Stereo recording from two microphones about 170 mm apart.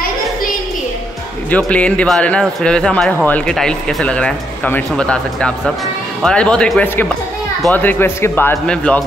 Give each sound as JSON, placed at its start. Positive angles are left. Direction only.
{"t": 1.5, "sound": "speech", "side_deg": 5}